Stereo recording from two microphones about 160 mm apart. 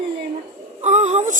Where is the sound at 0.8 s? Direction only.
45° right (ahead or behind).